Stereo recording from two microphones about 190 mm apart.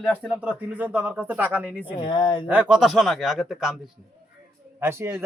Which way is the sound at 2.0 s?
25° left (ahead or behind).